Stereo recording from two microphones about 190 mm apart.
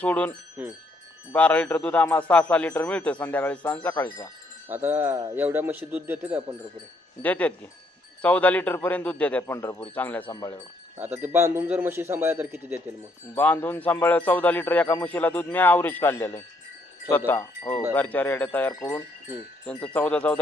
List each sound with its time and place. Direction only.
0.0 s speech: 10° left (ahead or behind)
0.6 s a man's voice: 10° right (ahead or behind)
1.3 s speech: 10° left (ahead or behind)
4.7 s a man's voice: 10° right (ahead or behind)
7.2 s speech: 10° left (ahead or behind)
11.0 s a man's voice: 10° right (ahead or behind)
13.3 s speech: 10° left (ahead or behind)